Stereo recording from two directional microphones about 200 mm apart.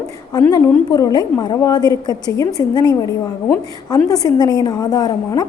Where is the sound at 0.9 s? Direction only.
20° left (ahead or behind).